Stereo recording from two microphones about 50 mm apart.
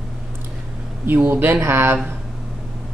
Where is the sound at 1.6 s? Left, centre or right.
Right.